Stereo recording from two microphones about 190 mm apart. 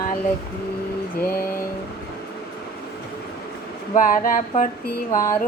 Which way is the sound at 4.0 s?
45° left (ahead or behind).